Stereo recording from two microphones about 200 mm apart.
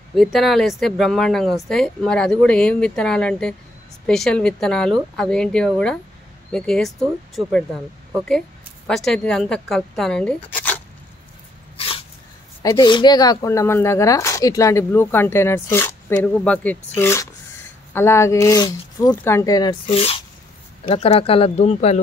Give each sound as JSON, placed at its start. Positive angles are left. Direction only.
{"t": 0.1, "sound": "a woman's voice", "side_deg": 0}
{"t": 11.7, "sound": "dog", "side_deg": 30}
{"t": 12.6, "sound": "speech", "side_deg": 20}